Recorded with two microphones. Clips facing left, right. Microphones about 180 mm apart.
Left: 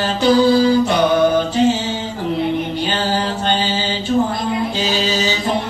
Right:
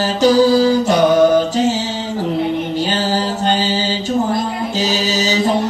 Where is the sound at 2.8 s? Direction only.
40° right (ahead or behind).